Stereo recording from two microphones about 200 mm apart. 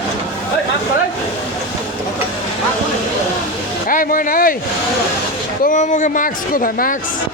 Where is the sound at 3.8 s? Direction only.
45° left (ahead or behind).